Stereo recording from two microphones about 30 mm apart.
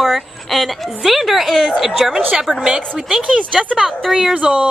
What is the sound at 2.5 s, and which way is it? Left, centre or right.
Speech, left.